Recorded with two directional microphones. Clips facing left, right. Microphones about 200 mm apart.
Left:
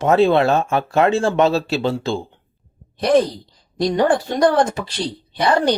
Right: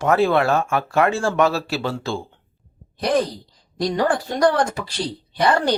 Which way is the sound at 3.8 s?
25° left (ahead or behind).